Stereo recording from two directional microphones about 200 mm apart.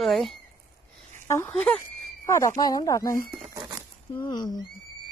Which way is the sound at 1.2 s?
10° left (ahead or behind).